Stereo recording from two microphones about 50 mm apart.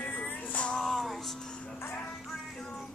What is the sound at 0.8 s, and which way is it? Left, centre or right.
Music, centre.